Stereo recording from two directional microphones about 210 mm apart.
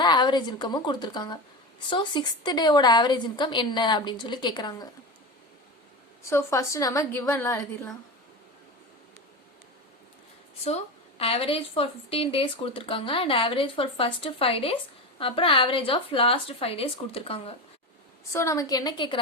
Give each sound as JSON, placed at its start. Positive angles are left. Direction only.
{"t": 0.0, "sound": "a woman's voice", "side_deg": 20}
{"t": 6.2, "sound": "a woman's voice", "side_deg": 15}
{"t": 10.6, "sound": "a woman's voice", "side_deg": 30}
{"t": 18.3, "sound": "a woman's voice", "side_deg": 15}